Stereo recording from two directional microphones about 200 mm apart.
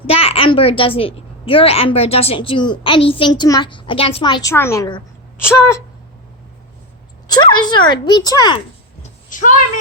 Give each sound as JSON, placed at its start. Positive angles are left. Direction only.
{"t": 0.1, "sound": "a child's voice", "side_deg": 30}
{"t": 7.3, "sound": "a child's voice", "side_deg": 20}
{"t": 9.3, "sound": "speech", "side_deg": 40}